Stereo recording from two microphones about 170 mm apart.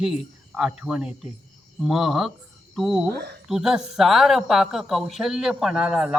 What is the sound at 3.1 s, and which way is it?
Speech, 70° right (ahead or behind).